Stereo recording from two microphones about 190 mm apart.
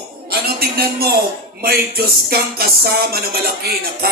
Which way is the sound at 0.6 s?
55° right (ahead or behind).